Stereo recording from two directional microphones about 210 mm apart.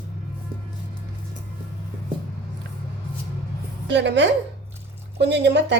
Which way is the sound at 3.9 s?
55° right (ahead or behind).